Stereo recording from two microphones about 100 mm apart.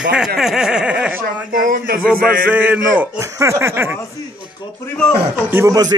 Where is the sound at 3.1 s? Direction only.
30° right (ahead or behind).